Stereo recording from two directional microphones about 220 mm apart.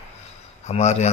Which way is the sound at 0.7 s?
30° left (ahead or behind).